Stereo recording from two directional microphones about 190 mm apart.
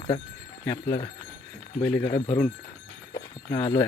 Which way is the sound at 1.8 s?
10° left (ahead or behind).